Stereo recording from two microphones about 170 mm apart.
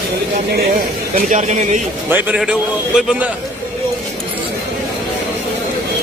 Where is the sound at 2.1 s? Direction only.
5° right (ahead or behind).